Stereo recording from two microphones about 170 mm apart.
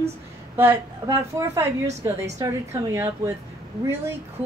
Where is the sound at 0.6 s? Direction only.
15° right (ahead or behind).